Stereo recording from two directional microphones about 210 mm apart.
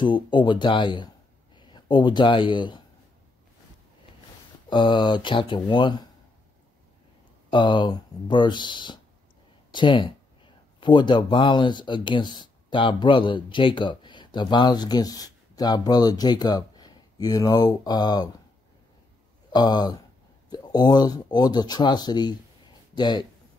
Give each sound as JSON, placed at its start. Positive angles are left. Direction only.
{"t": 0.0, "sound": "speech", "side_deg": 20}
{"t": 4.6, "sound": "speech", "side_deg": 20}
{"t": 7.5, "sound": "speech", "side_deg": 20}
{"t": 19.5, "sound": "speech", "side_deg": 20}